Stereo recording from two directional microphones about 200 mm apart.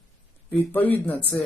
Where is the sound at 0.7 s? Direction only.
10° left (ahead or behind).